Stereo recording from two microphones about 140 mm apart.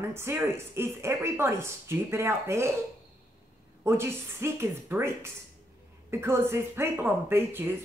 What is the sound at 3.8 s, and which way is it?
A woman's voice, 15° right (ahead or behind).